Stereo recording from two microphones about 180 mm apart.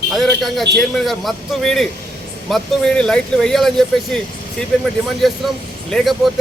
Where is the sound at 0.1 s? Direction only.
Centre (ahead or behind).